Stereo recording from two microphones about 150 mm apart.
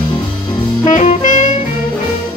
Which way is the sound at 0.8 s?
55° left (ahead or behind).